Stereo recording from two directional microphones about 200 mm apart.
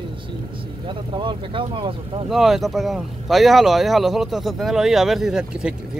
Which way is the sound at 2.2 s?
Centre (ahead or behind).